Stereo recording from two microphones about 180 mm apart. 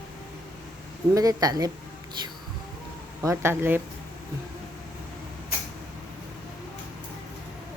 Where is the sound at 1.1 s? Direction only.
20° right (ahead or behind).